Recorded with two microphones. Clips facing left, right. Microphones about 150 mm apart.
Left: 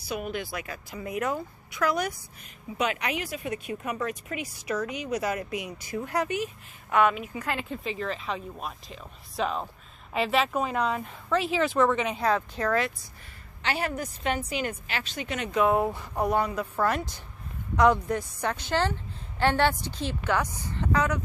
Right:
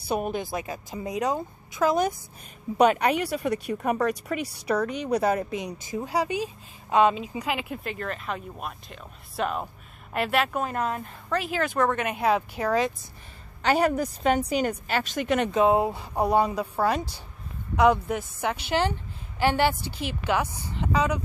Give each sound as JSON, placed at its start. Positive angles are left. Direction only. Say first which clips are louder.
{"t": 0.4, "sound": "a woman's voice", "louder": "right 4 dB", "side_deg": -20}
{"t": 2.9, "sound": "a woman's voice", "louder": "right 7 dB", "side_deg": -40}
{"t": 13.6, "sound": "speech", "louder": "right 8 dB", "side_deg": -45}
{"t": 15.5, "sound": "a woman's voice", "louder": "even", "side_deg": -25}
{"t": 16.3, "sound": "a woman's voice", "louder": "right 7 dB", "side_deg": -20}
{"t": 17.7, "sound": "a woman's voice", "louder": "right 1 dB", "side_deg": -10}